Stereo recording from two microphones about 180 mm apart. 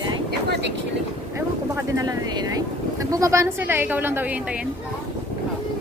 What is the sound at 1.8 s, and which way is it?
A woman's voice, 20° right (ahead or behind).